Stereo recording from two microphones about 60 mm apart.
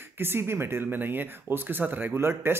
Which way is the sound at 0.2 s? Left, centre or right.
Right.